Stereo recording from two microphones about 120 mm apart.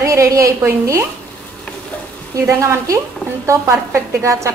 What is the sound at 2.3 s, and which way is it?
A woman's voice, 25° right (ahead or behind).